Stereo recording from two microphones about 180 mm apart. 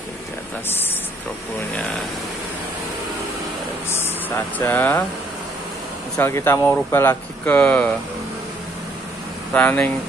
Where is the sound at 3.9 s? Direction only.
10° left (ahead or behind).